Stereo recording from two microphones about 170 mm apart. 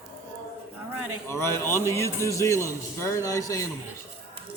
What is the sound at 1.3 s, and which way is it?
A man's voice, 15° left (ahead or behind).